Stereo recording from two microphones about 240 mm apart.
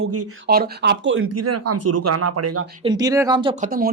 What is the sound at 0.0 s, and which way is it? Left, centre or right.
Speech, right.